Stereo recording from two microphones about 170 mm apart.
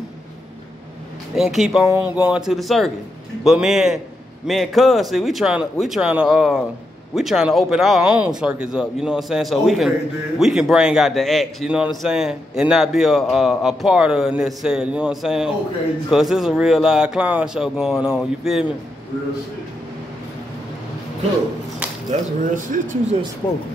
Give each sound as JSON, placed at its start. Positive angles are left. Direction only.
{"t": 1.3, "sound": "a man's voice", "side_deg": 0}
{"t": 22.4, "sound": "speech", "side_deg": -50}